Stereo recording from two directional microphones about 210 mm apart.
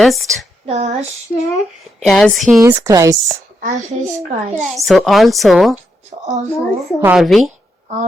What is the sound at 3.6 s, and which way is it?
Speech, 35° right (ahead or behind).